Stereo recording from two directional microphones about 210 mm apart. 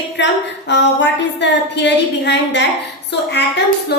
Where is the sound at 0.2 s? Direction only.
55° left (ahead or behind).